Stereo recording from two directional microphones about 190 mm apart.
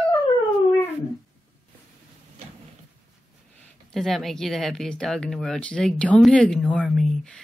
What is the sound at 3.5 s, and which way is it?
Speech, 5° left (ahead or behind).